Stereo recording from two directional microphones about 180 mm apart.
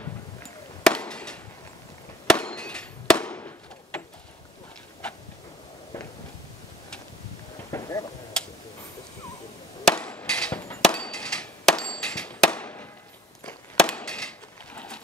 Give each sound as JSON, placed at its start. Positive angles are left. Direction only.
{"t": 0.8, "sound": "chop", "side_deg": 5}
{"t": 2.2, "sound": "fireworks", "side_deg": 5}
{"t": 7.7, "sound": "vehicle", "side_deg": 20}
{"t": 9.8, "sound": "hammer", "side_deg": 5}
{"t": 12.5, "sound": "fireworks", "side_deg": 10}
{"t": 13.5, "sound": "chop", "side_deg": 5}
{"t": 14.7, "sound": "pigeon", "side_deg": 10}